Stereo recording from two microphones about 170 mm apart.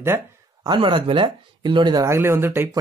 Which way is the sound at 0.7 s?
30° right (ahead or behind).